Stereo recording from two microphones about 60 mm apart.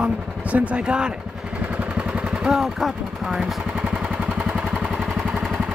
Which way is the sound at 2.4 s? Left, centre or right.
Centre.